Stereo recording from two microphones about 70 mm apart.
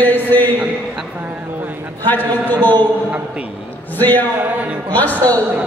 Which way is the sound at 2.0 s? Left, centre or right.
Left.